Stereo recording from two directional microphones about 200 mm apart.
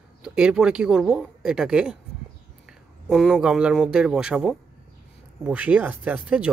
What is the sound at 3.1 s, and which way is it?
Speech, centre (ahead or behind).